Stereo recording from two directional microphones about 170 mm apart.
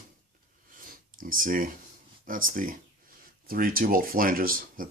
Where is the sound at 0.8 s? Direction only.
55° right (ahead or behind).